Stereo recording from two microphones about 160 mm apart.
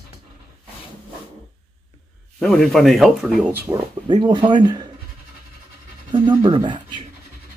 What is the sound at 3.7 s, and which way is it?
Speech, 20° right (ahead or behind).